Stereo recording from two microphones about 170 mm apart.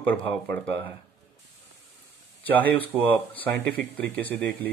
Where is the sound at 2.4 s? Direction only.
10° left (ahead or behind).